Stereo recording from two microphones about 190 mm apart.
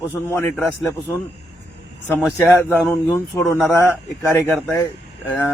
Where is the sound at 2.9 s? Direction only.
15° left (ahead or behind).